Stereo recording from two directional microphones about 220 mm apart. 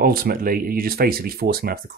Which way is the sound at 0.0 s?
40° right (ahead or behind).